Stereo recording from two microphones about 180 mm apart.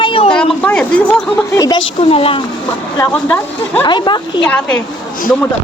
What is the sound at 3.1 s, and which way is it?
Speech, 5° left (ahead or behind).